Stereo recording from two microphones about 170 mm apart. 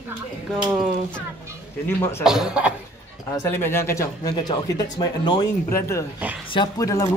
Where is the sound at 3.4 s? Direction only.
15° left (ahead or behind).